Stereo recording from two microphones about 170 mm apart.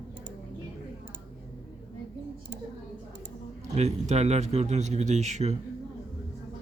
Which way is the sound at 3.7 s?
40° right (ahead or behind).